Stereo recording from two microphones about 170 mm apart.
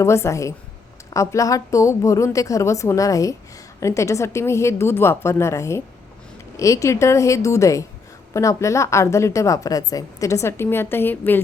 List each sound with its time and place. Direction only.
0.0 s a woman's voice: 15° left (ahead or behind)